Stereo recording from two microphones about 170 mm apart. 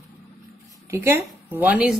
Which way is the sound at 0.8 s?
15° right (ahead or behind).